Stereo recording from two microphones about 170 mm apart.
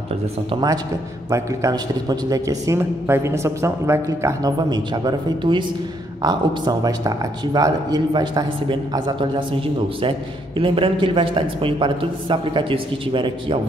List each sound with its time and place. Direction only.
0.5 s speech: 25° right (ahead or behind)